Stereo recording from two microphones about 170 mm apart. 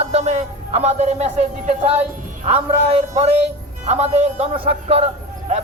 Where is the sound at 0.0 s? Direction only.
40° right (ahead or behind).